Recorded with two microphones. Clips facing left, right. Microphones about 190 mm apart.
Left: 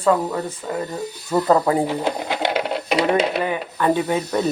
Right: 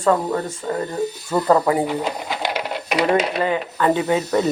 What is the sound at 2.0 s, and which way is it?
Speech, 25° left (ahead or behind).